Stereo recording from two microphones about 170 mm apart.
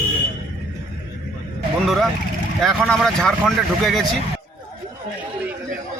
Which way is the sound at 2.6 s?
Centre (ahead or behind).